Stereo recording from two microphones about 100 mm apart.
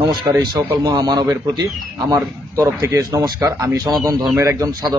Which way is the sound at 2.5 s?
30° right (ahead or behind).